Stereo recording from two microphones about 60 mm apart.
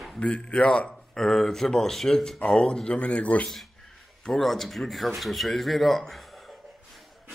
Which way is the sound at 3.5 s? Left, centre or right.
Centre.